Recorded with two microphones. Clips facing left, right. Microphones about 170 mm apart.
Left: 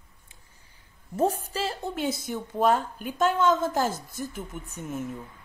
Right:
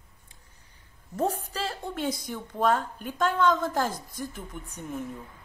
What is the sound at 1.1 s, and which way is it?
A woman's voice, 10° left (ahead or behind).